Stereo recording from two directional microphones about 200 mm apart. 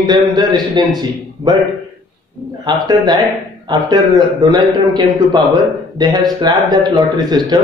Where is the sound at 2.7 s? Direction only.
20° right (ahead or behind).